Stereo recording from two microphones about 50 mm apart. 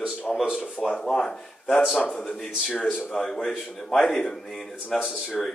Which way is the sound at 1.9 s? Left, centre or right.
Centre.